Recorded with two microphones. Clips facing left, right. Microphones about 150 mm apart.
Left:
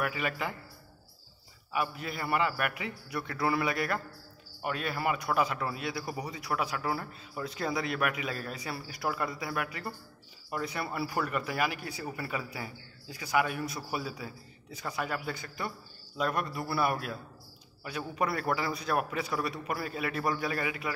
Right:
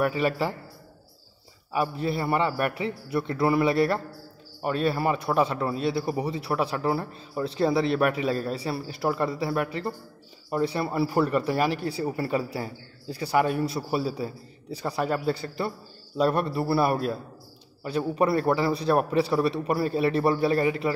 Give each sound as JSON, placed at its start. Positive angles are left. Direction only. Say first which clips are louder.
{"t": 0.0, "sound": "a man's voice", "louder": "right 8 dB", "side_deg": -35}
{"t": 1.7, "sound": "a man's voice", "louder": "right 7 dB", "side_deg": -30}